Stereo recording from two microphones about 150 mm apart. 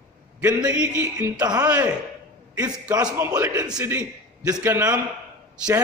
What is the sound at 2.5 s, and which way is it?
A man's voice, 25° right (ahead or behind).